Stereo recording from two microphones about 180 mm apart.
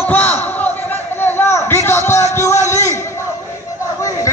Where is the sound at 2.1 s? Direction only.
15° left (ahead or behind).